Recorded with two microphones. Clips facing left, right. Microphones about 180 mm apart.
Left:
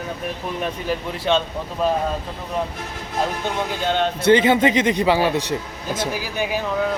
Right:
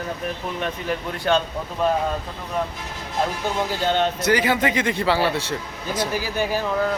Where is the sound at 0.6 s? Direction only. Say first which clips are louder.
Left 2 dB; 5° left (ahead or behind).